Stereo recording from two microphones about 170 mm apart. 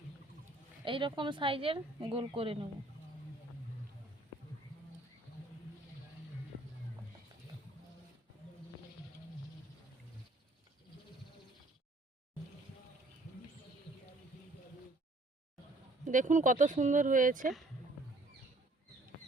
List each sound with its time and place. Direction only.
0.9 s a woman's voice: 30° right (ahead or behind)
16.0 s speech: 45° right (ahead or behind)